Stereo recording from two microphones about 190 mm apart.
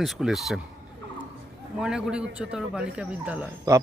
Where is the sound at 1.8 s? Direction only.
5° right (ahead or behind).